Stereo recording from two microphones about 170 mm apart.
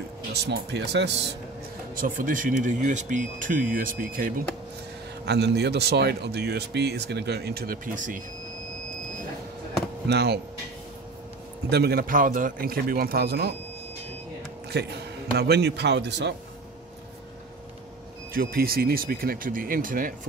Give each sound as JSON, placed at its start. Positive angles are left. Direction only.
{"t": 0.3, "sound": "a man's voice", "side_deg": -75}
{"t": 2.0, "sound": "speech", "side_deg": -50}
{"t": 5.2, "sound": "speech", "side_deg": -80}
{"t": 10.0, "sound": "speech", "side_deg": -75}
{"t": 11.7, "sound": "speech", "side_deg": -70}
{"t": 14.7, "sound": "a man's voice", "side_deg": -80}
{"t": 18.3, "sound": "speech", "side_deg": -60}